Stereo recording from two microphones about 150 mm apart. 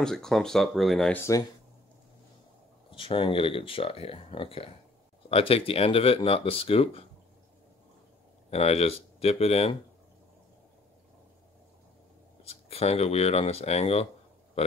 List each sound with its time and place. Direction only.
0.0 s speech: 5° left (ahead or behind)
1.1 s speech: 20° left (ahead or behind)
2.9 s speech: 35° left (ahead or behind)
8.5 s speech: 45° left (ahead or behind)
12.4 s speech: 40° left (ahead or behind)